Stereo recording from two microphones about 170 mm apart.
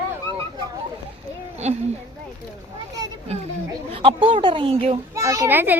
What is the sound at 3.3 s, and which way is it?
A child's voice, 40° right (ahead or behind).